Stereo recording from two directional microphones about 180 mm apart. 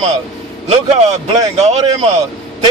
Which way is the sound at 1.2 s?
35° right (ahead or behind).